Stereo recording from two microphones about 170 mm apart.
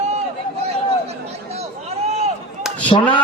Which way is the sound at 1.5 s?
40° right (ahead or behind).